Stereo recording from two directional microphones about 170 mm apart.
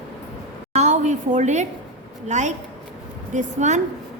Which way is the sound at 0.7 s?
45° right (ahead or behind).